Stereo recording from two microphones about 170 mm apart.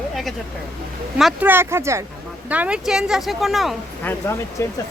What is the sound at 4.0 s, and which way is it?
Speech, 10° left (ahead or behind).